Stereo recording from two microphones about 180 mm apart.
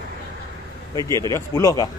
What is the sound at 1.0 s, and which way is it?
Speech, 20° left (ahead or behind).